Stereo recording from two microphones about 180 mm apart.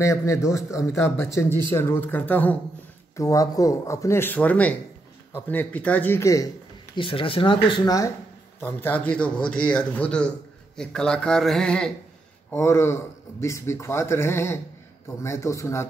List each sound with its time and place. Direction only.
0.0 s a man's voice: 15° left (ahead or behind)
7.0 s a man's voice: 30° left (ahead or behind); by 11.9 s 5° left (ahead or behind)
12.4 s a man's voice: 15° left (ahead or behind)